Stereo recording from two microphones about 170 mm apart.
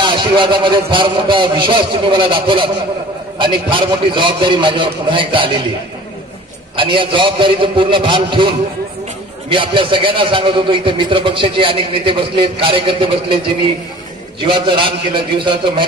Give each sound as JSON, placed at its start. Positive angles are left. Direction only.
{"t": 0.0, "sound": "a man's voice", "side_deg": -30}
{"t": 6.8, "sound": "a man's voice", "side_deg": -30}
{"t": 14.4, "sound": "a man's voice", "side_deg": -30}